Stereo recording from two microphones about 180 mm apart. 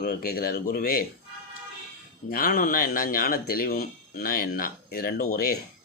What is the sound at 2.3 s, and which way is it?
Speech, 55° left (ahead or behind).